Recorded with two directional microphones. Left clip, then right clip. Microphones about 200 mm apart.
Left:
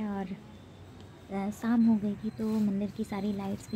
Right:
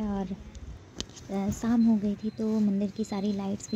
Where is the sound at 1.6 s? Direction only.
10° right (ahead or behind).